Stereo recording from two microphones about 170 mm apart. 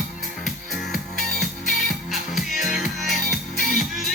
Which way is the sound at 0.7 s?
Centre (ahead or behind).